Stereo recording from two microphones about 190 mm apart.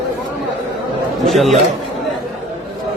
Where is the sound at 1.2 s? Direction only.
Centre (ahead or behind).